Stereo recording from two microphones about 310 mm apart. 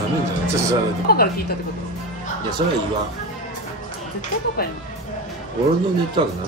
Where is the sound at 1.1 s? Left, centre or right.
Left.